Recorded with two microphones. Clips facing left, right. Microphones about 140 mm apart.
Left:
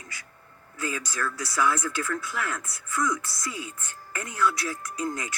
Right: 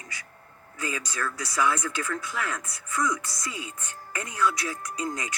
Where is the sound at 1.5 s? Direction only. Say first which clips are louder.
Even; 25° right (ahead or behind).